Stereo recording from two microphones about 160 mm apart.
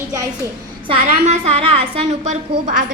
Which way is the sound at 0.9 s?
40° right (ahead or behind).